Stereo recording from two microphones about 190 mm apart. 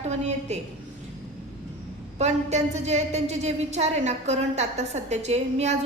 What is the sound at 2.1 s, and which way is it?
A woman's voice, 35° right (ahead or behind).